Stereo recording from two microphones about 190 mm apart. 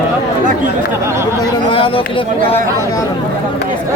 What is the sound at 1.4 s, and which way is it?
Speech, 25° left (ahead or behind).